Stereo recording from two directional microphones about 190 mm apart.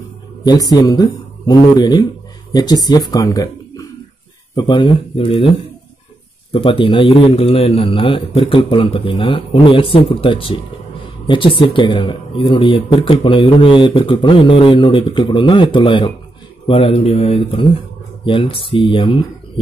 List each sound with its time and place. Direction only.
0.5 s speech: 20° left (ahead or behind)
6.5 s speech: 30° left (ahead or behind)